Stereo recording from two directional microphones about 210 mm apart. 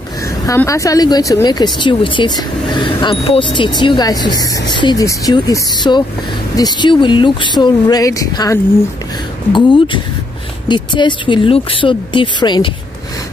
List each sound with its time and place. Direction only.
0.5 s speech: 15° left (ahead or behind)